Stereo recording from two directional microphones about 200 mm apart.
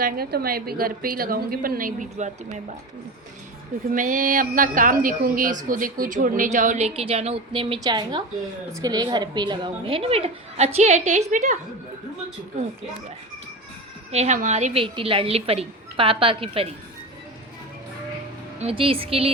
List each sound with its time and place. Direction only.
0.0 s a woman's voice: 50° right (ahead or behind); by 2.6 s 35° right (ahead or behind)
3.9 s a woman's voice: 40° right (ahead or behind)
14.1 s a woman's voice: 35° right (ahead or behind)
18.6 s a woman's voice: 25° right (ahead or behind)